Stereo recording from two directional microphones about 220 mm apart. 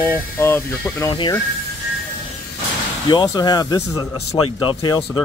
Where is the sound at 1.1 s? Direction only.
20° left (ahead or behind).